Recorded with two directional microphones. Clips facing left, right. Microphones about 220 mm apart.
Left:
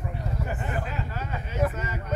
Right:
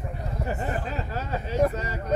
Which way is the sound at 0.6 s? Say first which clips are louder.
Right 2 dB; 35° right (ahead or behind).